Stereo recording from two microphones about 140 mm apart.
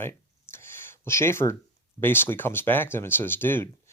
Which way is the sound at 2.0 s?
15° left (ahead or behind).